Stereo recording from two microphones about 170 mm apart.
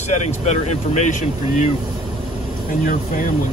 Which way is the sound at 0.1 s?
40° left (ahead or behind).